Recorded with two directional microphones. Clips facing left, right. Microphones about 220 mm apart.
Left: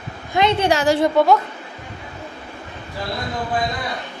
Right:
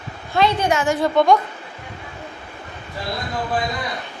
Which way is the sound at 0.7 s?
35° left (ahead or behind).